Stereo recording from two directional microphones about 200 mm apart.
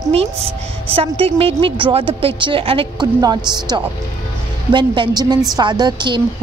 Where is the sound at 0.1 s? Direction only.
30° right (ahead or behind).